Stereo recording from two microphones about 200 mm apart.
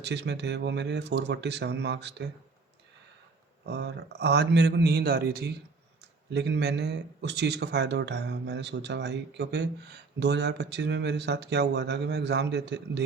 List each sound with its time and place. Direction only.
0.0 s speech: 60° right (ahead or behind)
3.7 s speech: 60° right (ahead or behind)